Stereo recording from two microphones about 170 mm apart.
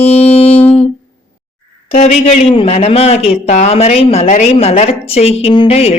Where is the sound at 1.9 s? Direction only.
45° left (ahead or behind).